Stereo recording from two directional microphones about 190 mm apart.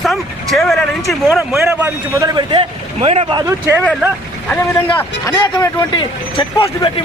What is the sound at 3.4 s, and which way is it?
Speech, 15° right (ahead or behind).